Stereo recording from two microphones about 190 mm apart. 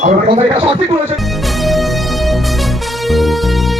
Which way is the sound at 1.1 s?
Centre (ahead or behind).